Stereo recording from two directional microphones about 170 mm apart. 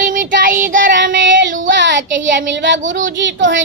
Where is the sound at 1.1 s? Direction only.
90° right.